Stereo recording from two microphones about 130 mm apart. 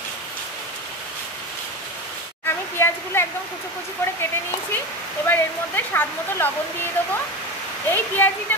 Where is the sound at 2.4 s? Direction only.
20° left (ahead or behind).